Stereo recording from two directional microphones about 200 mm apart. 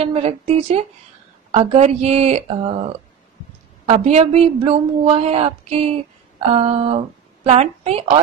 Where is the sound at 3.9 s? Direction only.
30° right (ahead or behind).